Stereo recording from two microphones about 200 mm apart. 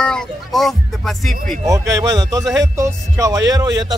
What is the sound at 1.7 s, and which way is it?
Speech, 15° right (ahead or behind).